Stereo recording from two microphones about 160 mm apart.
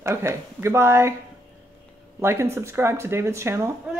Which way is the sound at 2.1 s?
15° right (ahead or behind).